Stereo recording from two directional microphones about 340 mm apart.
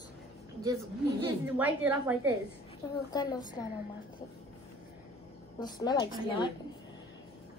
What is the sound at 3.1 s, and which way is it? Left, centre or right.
Child singing, centre.